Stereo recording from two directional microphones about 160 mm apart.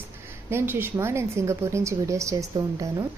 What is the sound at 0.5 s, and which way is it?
A woman's voice, 15° right (ahead or behind).